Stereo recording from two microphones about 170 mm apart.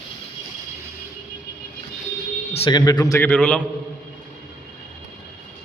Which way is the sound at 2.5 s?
30° left (ahead or behind).